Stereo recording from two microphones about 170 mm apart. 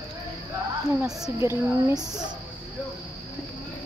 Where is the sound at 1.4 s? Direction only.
15° right (ahead or behind).